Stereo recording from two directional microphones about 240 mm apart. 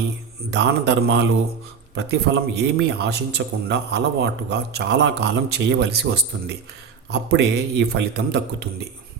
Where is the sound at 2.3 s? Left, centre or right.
Right.